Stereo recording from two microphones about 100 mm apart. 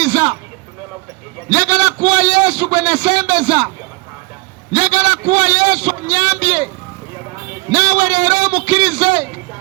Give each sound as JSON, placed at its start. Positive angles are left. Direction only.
{"t": 0.0, "sound": "a sound", "side_deg": -65}
{"t": 1.5, "sound": "a man's voice", "side_deg": -70}
{"t": 4.7, "sound": "a man's voice", "side_deg": -65}
{"t": 7.7, "sound": "a man's voice", "side_deg": -70}